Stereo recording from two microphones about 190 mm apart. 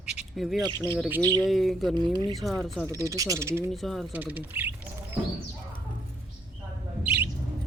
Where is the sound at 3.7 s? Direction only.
Centre (ahead or behind).